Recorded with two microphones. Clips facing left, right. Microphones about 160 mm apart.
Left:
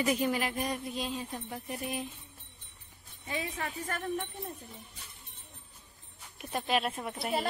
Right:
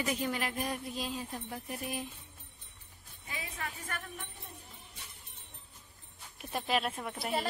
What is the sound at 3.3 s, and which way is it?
Speech, 40° left (ahead or behind).